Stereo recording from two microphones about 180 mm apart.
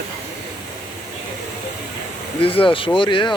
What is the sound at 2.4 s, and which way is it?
Speech, 30° left (ahead or behind).